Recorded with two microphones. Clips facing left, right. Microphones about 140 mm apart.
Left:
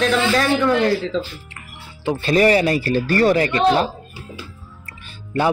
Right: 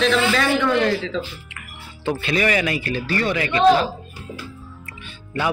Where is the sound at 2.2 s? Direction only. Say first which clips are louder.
Left 7 dB; 35° left (ahead or behind).